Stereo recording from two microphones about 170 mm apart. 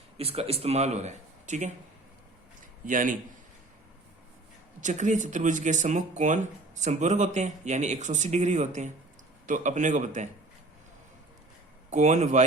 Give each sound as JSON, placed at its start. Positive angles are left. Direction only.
{"t": 0.2, "sound": "speech", "side_deg": -35}
{"t": 2.8, "sound": "speech", "side_deg": -50}
{"t": 4.8, "sound": "speech", "side_deg": -45}
{"t": 11.9, "sound": "speech", "side_deg": -45}